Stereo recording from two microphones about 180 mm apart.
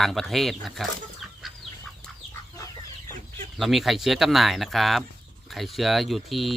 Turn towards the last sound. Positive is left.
turn(degrees=0)  # may be behind; listen again after turning